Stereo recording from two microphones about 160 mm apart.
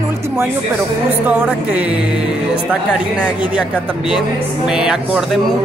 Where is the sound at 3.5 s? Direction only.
5° right (ahead or behind).